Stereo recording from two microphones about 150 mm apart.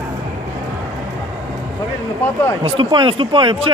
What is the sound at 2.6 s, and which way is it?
Speech, 35° right (ahead or behind).